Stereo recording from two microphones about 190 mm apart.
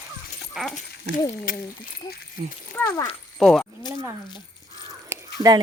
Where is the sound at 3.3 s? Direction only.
Centre (ahead or behind).